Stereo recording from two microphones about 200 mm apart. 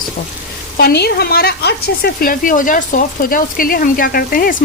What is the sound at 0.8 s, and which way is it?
Speech, 50° left (ahead or behind).